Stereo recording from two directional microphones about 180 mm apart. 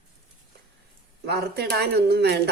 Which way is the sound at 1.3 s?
65° right (ahead or behind).